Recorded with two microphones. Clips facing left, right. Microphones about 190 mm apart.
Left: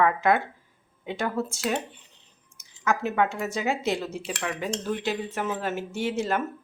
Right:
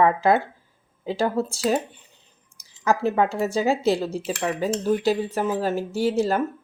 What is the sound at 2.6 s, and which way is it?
Speech, 35° right (ahead or behind).